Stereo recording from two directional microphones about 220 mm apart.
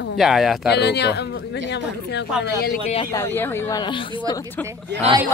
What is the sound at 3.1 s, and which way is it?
Speech, 10° left (ahead or behind).